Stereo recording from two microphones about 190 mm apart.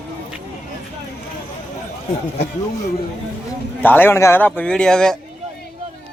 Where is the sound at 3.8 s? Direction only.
10° left (ahead or behind).